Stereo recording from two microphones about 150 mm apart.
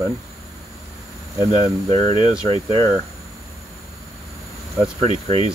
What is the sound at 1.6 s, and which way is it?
Speech, 45° right (ahead or behind).